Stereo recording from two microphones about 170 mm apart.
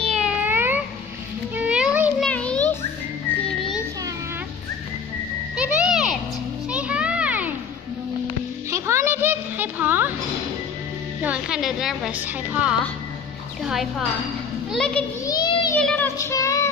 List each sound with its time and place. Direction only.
0.1 s cat: 5° right (ahead or behind)
1.5 s music: 5° right (ahead or behind)
2.2 s music: 5° left (ahead or behind)
5.6 s music: 5° right (ahead or behind)
6.7 s children playing: 5° right (ahead or behind)
8.6 s a sound: 15° right (ahead or behind)
11.2 s a woman's voice: 5° right (ahead or behind)
15.2 s child singing: 25° left (ahead or behind)
15.7 s child singing: 10° left (ahead or behind)